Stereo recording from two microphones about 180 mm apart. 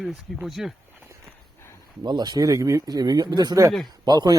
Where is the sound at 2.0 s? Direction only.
25° right (ahead or behind).